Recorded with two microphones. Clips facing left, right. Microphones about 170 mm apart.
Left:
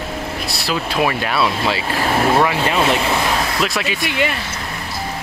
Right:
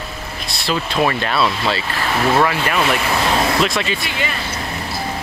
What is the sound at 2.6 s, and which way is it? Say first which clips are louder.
Speech: left 2 dB; 25° left (ahead or behind).